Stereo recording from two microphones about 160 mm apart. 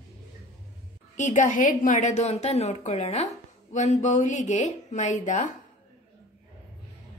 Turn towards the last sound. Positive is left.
turn(degrees=50)  # may be behind; listen again after turning